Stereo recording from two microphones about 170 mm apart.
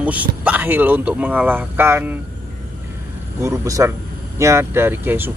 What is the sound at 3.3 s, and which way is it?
Speech, 15° right (ahead or behind).